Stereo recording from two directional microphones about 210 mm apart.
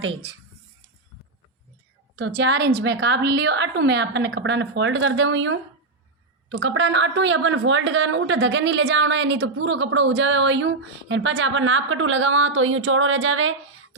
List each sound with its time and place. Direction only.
2.1 s a woman's voice: 55° right (ahead or behind)